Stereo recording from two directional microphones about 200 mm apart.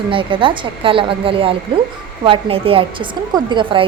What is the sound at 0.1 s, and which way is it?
A woman's voice, 25° right (ahead or behind).